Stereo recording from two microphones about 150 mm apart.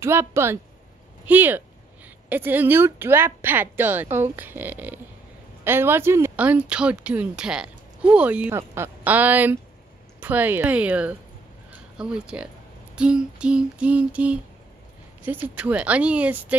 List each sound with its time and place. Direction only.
0.0 s speech: 15° right (ahead or behind)